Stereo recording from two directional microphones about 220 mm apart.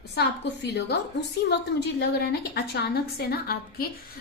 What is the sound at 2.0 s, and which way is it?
A woman's voice, 45° left (ahead or behind).